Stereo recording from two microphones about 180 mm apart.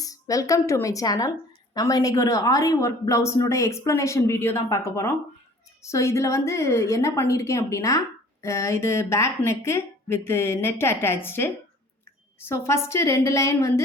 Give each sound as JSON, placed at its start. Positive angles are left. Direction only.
{"t": 0.0, "sound": "a woman's voice", "side_deg": 20}